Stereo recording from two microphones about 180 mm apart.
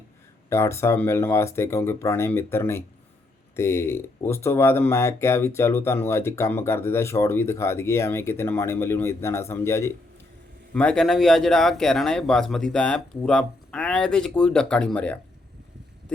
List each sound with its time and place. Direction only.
0.5 s speech: 15° left (ahead or behind)